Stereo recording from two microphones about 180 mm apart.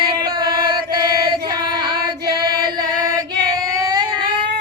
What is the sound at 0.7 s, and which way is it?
Mantra, 25° right (ahead or behind).